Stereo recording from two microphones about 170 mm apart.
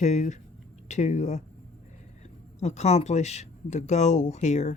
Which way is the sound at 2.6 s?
40° left (ahead or behind).